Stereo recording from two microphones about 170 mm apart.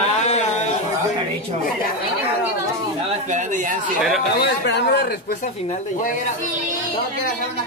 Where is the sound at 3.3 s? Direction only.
50° right (ahead or behind).